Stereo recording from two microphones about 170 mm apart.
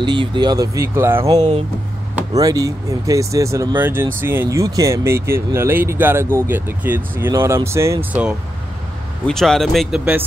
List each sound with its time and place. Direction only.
0.0 s speech: 30° right (ahead or behind)
2.3 s speech: 20° right (ahead or behind)
9.2 s speech: 5° left (ahead or behind)